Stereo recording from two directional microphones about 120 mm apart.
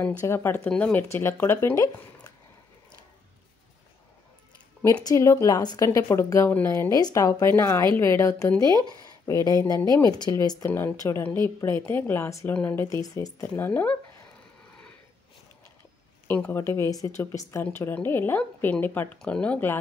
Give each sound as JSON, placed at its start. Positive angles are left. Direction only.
{"t": 0.2, "sound": "speech", "side_deg": 20}
{"t": 0.7, "sound": "speech", "side_deg": 10}
{"t": 1.0, "sound": "speech", "side_deg": 20}
{"t": 5.0, "sound": "speech", "side_deg": 25}
{"t": 5.9, "sound": "a woman's voice", "side_deg": 20}
{"t": 10.6, "sound": "speech", "side_deg": 20}
{"t": 12.8, "sound": "speech", "side_deg": 25}
{"t": 13.4, "sound": "speech", "side_deg": 15}
{"t": 16.3, "sound": "speech", "side_deg": 15}